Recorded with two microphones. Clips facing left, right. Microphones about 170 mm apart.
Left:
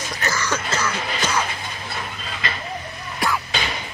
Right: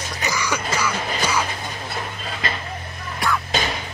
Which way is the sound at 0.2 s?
15° right (ahead or behind).